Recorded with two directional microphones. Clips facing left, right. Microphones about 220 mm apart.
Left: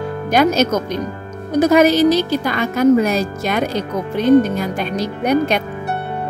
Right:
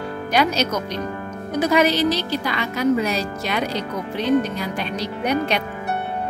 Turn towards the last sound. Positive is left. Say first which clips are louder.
# left 5 dB
turn(degrees=45)  # may be behind; listen again after turning